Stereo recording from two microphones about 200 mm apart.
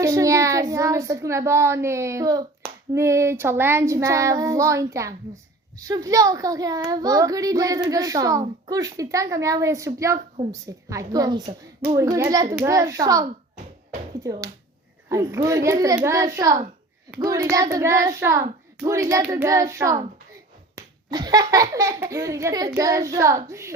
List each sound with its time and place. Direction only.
0.0 s a child's voice: 15° right (ahead or behind)
14.3 s a child's voice: 15° right (ahead or behind)